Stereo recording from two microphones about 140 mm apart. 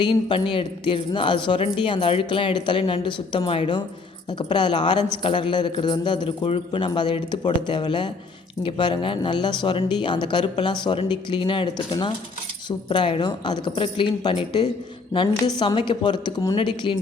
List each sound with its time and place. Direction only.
0.0 s speech: 35° left (ahead or behind)